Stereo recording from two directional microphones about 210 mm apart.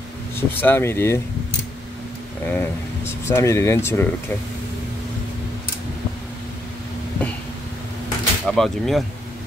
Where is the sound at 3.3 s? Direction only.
15° left (ahead or behind).